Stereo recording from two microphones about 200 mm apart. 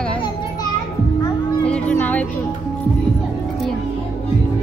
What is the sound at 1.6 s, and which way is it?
Music, 5° left (ahead or behind).